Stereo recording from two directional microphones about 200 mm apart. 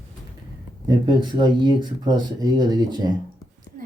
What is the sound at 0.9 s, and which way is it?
Speech, 20° right (ahead or behind).